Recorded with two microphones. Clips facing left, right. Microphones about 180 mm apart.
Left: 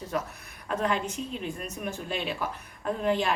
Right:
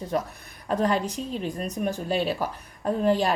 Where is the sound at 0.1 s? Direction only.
35° right (ahead or behind).